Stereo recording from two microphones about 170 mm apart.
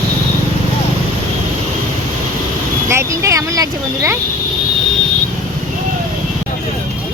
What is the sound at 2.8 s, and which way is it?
Speech, 15° right (ahead or behind).